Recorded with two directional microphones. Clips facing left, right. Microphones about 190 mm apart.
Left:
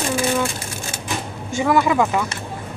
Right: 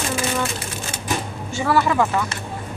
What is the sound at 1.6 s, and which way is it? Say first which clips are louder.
Speech: left 2 dB; 15° left (ahead or behind).